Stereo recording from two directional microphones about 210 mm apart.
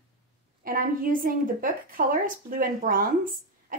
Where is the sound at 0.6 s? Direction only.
40° right (ahead or behind).